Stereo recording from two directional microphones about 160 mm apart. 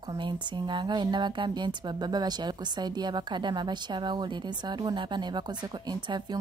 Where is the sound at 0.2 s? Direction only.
30° right (ahead or behind).